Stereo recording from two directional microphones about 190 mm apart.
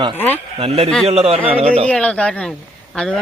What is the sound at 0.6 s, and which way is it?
Speech, 30° right (ahead or behind).